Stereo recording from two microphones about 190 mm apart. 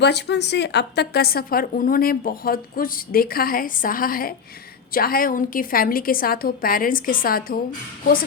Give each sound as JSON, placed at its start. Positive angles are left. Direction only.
{"t": 0.0, "sound": "a woman's voice", "side_deg": 65}